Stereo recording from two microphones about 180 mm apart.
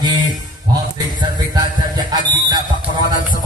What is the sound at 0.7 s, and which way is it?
Music, 20° right (ahead or behind).